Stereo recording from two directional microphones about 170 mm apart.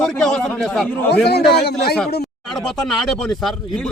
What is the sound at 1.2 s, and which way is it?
Speech, 70° left (ahead or behind).